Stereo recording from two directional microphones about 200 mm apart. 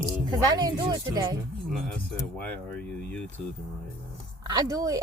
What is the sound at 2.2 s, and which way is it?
Speech, 5° left (ahead or behind).